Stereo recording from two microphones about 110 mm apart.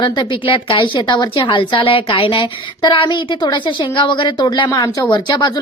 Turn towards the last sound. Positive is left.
turn(degrees=40)  # may be behind; listen again after turning